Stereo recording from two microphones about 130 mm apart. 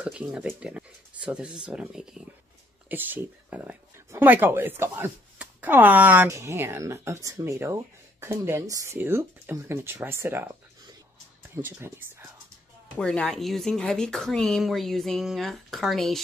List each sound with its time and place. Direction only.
0.0 s speech: 5° right (ahead or behind)
13.0 s speech: 5° left (ahead or behind)